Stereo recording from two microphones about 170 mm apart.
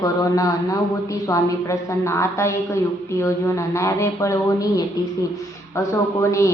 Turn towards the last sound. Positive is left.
turn(degrees=20)  # may be behind; listen again after turning